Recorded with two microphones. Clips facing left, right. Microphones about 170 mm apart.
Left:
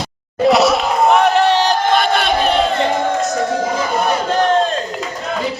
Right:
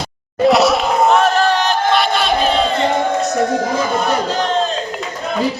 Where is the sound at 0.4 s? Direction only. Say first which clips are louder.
Even; centre (ahead or behind).